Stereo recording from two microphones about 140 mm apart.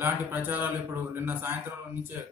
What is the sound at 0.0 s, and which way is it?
Speech, 15° right (ahead or behind).